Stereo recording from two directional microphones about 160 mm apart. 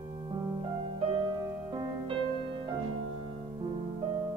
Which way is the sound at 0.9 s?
25° right (ahead or behind).